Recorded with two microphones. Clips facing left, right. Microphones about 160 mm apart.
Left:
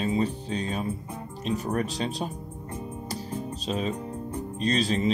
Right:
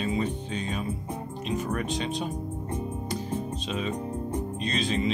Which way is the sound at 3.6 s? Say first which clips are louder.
Left 1 dB; 35° left (ahead or behind).